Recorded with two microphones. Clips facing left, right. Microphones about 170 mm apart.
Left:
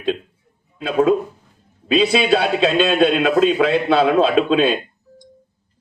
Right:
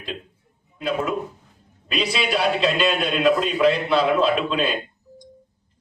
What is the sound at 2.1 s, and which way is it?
A man's voice, 65° left (ahead or behind).